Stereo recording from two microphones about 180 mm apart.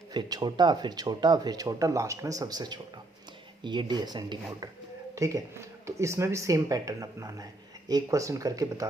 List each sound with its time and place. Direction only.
0.1 s speech: 20° right (ahead or behind)